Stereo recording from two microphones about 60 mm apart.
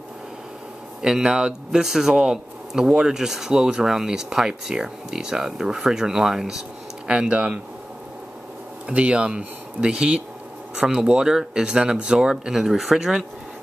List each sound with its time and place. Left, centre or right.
1.0 s a man's voice: centre
8.8 s a man's voice: centre